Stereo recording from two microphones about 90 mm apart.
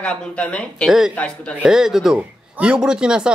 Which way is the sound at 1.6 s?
5° right (ahead or behind).